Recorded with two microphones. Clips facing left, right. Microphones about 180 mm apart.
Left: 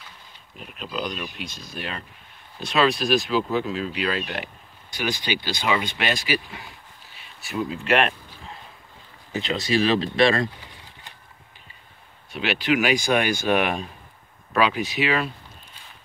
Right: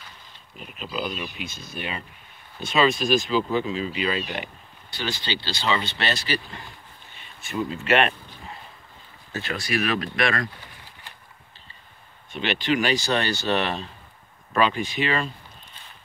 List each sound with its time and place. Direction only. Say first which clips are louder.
0.6 s speech: even; centre (ahead or behind)
4.9 s speech: left 3 dB; 15° left (ahead or behind); by 8.1 s centre (ahead or behind)
9.3 s speech: left 4 dB; 20° left (ahead or behind)
12.4 s speech: left 1 dB; 5° left (ahead or behind)